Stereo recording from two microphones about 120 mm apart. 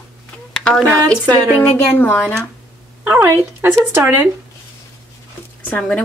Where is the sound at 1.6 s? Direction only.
15° left (ahead or behind).